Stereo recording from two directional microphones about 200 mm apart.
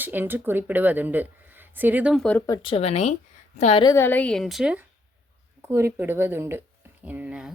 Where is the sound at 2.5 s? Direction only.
25° left (ahead or behind).